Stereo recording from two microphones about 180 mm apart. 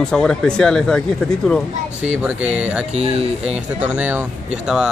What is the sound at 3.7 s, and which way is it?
Speech, 10° right (ahead or behind).